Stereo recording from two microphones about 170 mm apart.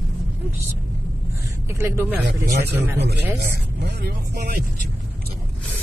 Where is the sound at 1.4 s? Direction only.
15° right (ahead or behind).